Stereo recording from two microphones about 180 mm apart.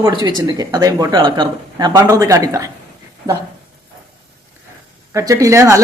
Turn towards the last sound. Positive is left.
turn(degrees=-15)  # may be behind; listen again after turning